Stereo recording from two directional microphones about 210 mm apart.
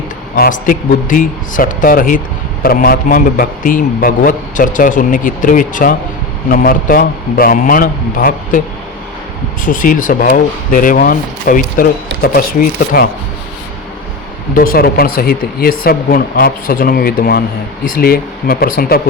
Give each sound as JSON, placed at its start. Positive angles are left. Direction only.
{"t": 0.3, "sound": "a man's voice", "side_deg": 45}
{"t": 9.6, "sound": "a man's voice", "side_deg": 40}
{"t": 14.5, "sound": "speech", "side_deg": 45}